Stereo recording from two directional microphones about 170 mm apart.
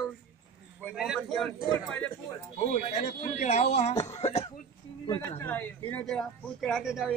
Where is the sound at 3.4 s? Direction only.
40° left (ahead or behind).